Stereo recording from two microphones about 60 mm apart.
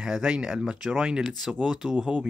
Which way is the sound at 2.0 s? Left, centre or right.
Right.